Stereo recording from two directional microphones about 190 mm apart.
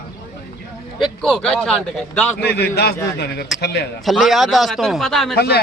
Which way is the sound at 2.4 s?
55° left (ahead or behind).